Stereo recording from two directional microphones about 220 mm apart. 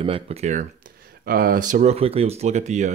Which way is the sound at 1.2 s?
40° right (ahead or behind).